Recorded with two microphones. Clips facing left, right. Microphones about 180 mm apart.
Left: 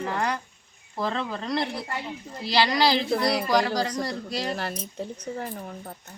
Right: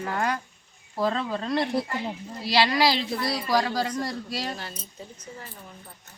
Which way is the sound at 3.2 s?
70° left (ahead or behind).